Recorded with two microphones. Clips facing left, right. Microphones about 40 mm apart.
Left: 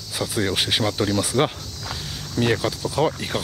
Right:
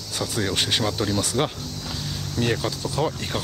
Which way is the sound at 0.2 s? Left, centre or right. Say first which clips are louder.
Left 2 dB; centre.